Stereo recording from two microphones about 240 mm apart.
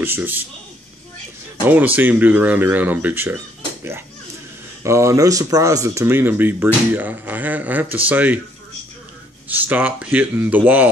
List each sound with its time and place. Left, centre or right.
0.0 s speech: centre
2.0 s speech: centre
4.8 s speech: centre
9.5 s speech: centre